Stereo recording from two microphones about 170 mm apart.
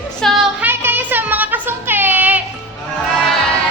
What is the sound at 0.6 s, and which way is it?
Speech, 10° right (ahead or behind).